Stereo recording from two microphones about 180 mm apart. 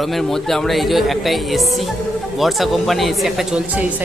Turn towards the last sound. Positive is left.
turn(degrees=-5)  # may be behind; listen again after turning